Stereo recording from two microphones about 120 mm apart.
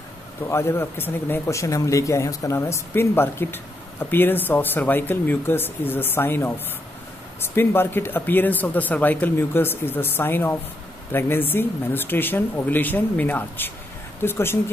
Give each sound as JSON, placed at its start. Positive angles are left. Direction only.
{"t": 0.5, "sound": "a man's voice", "side_deg": 20}